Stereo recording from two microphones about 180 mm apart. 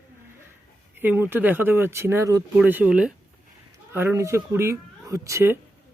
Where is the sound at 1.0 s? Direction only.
10° right (ahead or behind).